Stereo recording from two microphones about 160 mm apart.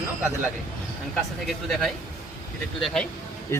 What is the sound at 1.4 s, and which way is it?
Speech, centre (ahead or behind).